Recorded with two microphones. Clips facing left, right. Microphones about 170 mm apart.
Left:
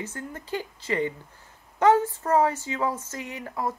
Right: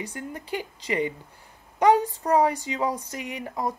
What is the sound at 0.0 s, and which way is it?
A woman's voice, 15° right (ahead or behind).